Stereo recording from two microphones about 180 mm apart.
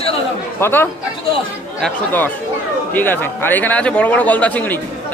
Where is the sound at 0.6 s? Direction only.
15° left (ahead or behind).